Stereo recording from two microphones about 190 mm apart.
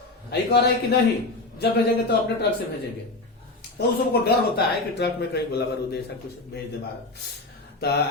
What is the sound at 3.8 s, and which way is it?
Speech, 55° left (ahead or behind).